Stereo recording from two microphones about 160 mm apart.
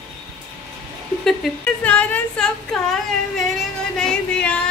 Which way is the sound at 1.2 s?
5° left (ahead or behind).